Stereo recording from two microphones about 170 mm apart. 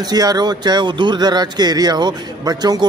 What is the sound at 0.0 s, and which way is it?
Speech, 25° right (ahead or behind).